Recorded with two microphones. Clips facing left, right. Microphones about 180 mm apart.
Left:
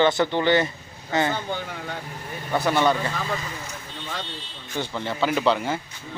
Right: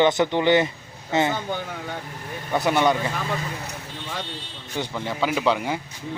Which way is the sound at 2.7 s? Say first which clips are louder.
Right 1 dB; 15° right (ahead or behind).